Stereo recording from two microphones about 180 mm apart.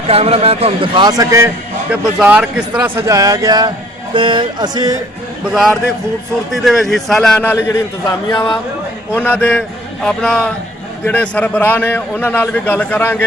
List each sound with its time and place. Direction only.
0.1 s speech: 35° right (ahead or behind); by 1.5 s 20° right (ahead or behind)
1.9 s speech: 5° right (ahead or behind); by 4.9 s 20° right (ahead or behind)
5.5 s a man's voice: centre (ahead or behind)
8.0 s speech: 20° left (ahead or behind)
9.1 s a man's voice: 10° left (ahead or behind)